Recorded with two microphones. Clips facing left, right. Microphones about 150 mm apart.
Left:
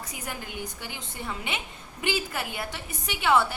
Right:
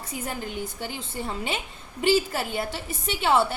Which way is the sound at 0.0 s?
30° right (ahead or behind).